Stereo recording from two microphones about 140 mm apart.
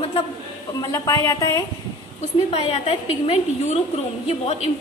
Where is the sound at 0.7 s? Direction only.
25° left (ahead or behind).